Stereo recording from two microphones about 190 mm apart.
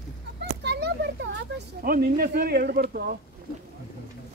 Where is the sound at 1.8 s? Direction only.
50° right (ahead or behind).